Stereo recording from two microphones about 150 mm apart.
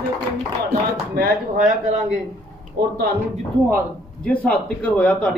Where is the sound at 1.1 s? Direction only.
90° right.